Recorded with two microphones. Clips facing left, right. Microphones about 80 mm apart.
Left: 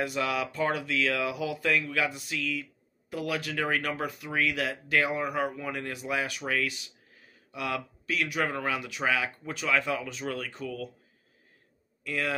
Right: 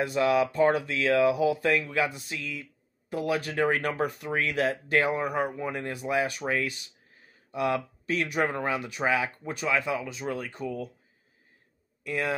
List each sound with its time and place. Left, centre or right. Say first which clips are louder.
0.0 s speech: right 6 dB; right
12.0 s speech: right 2 dB; right